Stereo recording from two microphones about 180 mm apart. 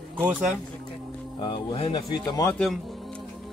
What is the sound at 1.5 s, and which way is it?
Speech, 25° left (ahead or behind).